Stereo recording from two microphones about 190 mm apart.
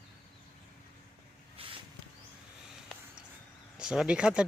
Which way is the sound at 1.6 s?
30° right (ahead or behind).